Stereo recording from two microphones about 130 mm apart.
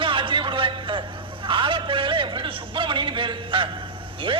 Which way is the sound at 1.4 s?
40° right (ahead or behind).